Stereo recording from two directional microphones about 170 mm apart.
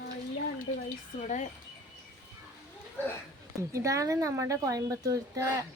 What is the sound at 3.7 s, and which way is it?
Speech, 20° right (ahead or behind).